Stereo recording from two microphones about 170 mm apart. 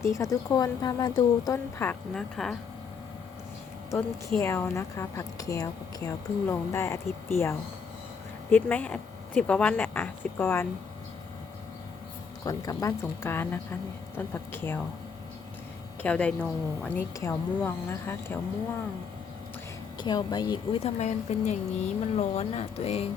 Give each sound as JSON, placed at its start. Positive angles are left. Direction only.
{"t": 0.0, "sound": "speech", "side_deg": 20}
{"t": 1.5, "sound": "speech", "side_deg": 10}
{"t": 4.4, "sound": "a woman's voice", "side_deg": 15}
{"t": 8.5, "sound": "a woman's voice", "side_deg": 10}
{"t": 12.5, "sound": "a woman's voice", "side_deg": 20}
{"t": 16.0, "sound": "a woman's voice", "side_deg": 5}
{"t": 20.0, "sound": "speech", "side_deg": 25}
{"t": 20.8, "sound": "speech", "side_deg": 40}